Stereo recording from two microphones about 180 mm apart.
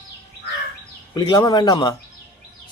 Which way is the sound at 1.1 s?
20° left (ahead or behind).